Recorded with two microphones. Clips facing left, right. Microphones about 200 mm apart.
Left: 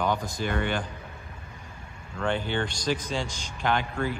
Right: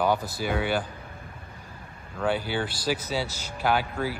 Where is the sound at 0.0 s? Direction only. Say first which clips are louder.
Right 2 dB; 5° right (ahead or behind).